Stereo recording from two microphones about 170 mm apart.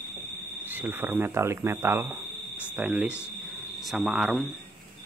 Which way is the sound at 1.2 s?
15° right (ahead or behind).